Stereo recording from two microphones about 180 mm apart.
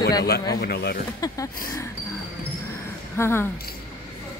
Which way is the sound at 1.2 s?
15° left (ahead or behind).